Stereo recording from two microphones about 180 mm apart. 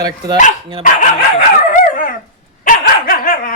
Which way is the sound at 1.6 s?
50° left (ahead or behind).